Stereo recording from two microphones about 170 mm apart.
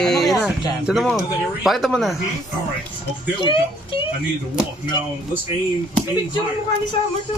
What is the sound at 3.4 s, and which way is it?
Speech, 30° left (ahead or behind).